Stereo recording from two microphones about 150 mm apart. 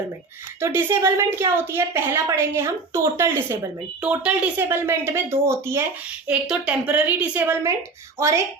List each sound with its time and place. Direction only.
0.6 s a woman's voice: 15° right (ahead or behind)
6.2 s a woman's voice: 5° right (ahead or behind)